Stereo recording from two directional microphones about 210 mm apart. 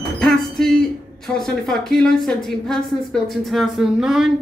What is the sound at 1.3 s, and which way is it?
A woman's voice, 5° left (ahead or behind).